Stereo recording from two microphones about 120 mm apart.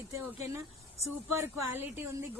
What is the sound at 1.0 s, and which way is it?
Speech, 20° right (ahead or behind).